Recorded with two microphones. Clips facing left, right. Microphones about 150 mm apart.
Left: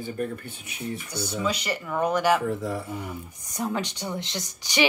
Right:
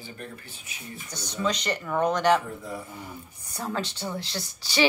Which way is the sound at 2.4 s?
90° left.